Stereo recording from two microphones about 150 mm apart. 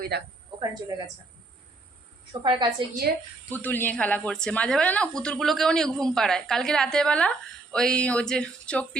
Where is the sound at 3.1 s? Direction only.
90° right.